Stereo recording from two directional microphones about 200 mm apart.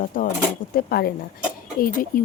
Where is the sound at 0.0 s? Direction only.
45° left (ahead or behind).